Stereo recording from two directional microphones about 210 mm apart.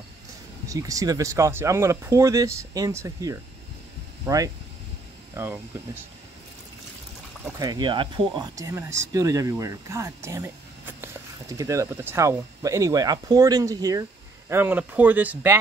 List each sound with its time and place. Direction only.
0.7 s speech: 15° right (ahead or behind)
7.5 s speech: 20° right (ahead or behind)